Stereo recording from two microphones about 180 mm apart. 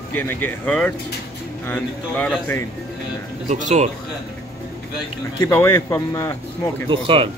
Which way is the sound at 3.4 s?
40° right (ahead or behind).